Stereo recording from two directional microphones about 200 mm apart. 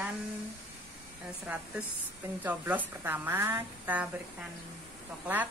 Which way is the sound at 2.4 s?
10° right (ahead or behind).